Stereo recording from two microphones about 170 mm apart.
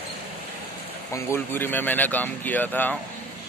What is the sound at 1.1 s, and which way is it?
Speech, 15° left (ahead or behind).